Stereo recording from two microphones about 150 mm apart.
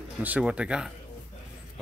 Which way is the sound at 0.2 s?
10° right (ahead or behind).